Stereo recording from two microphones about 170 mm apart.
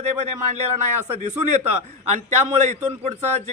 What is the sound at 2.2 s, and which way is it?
A man's voice, 45° right (ahead or behind).